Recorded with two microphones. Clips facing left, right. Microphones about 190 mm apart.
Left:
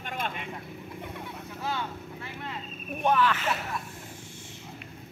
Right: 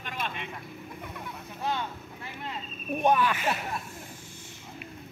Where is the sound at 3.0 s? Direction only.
15° right (ahead or behind).